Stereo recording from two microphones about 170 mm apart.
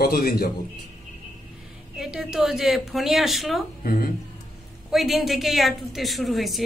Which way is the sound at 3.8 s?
60° left (ahead or behind).